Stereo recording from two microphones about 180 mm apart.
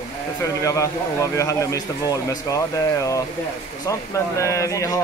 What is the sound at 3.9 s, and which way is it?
Speech, 15° left (ahead or behind).